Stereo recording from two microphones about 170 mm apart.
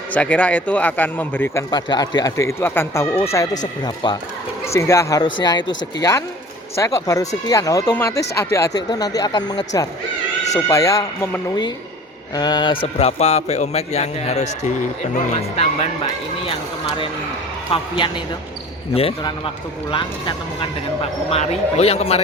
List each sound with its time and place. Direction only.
0.1 s a man's voice: 10° left (ahead or behind)
1.7 s a man's voice: 25° left (ahead or behind)
17.7 s a man's voice: 30° left (ahead or behind)